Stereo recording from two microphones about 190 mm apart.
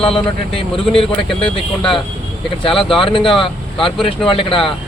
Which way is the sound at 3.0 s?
25° left (ahead or behind).